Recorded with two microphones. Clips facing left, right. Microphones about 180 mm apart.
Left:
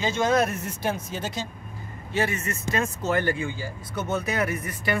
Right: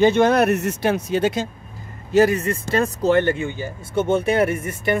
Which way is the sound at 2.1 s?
40° right (ahead or behind).